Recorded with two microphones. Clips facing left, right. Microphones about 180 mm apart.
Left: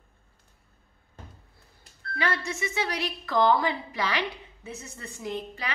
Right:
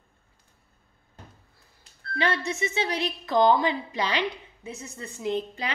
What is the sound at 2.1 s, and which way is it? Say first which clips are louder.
A woman's voice: right 3 dB; 25° right (ahead or behind).